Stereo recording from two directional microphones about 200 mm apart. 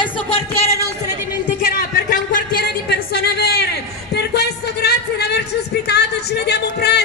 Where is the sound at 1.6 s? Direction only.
40° left (ahead or behind).